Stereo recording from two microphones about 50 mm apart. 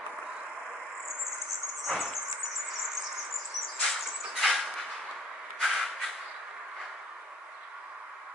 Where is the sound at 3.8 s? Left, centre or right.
Centre.